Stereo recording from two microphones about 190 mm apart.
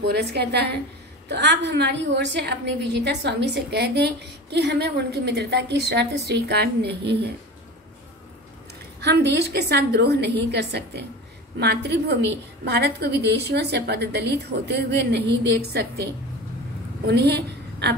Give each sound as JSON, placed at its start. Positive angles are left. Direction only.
{"t": 0.0, "sound": "a woman's voice", "side_deg": -60}
{"t": 9.0, "sound": "a woman's voice", "side_deg": -65}
{"t": 17.1, "sound": "a woman's voice", "side_deg": -60}